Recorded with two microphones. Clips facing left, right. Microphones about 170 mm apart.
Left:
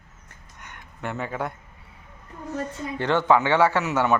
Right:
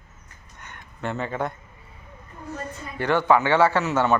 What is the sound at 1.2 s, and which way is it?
Speech, 10° left (ahead or behind).